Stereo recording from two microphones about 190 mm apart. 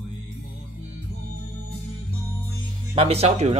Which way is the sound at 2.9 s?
30° right (ahead or behind).